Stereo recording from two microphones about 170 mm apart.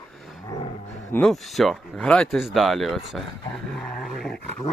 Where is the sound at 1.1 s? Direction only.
Centre (ahead or behind).